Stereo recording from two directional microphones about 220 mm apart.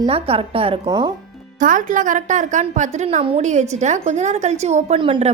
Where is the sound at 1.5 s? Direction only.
35° right (ahead or behind).